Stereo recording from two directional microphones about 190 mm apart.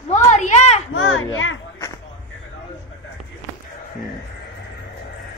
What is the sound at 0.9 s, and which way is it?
Speech, 90° left.